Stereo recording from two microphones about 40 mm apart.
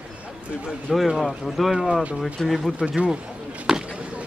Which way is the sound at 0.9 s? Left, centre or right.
Centre.